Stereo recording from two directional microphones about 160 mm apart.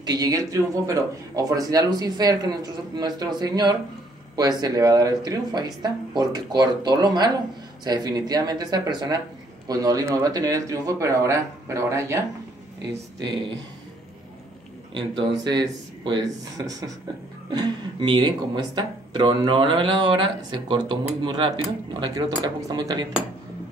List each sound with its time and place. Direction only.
0.0 s speech: 25° right (ahead or behind)
15.0 s speech: 25° right (ahead or behind)